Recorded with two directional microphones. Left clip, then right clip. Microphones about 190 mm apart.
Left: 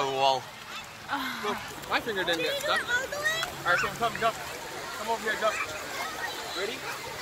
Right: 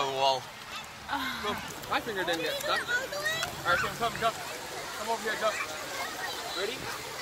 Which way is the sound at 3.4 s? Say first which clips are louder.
Even; 5° left (ahead or behind).